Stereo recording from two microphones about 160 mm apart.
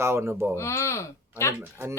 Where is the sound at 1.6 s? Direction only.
15° right (ahead or behind).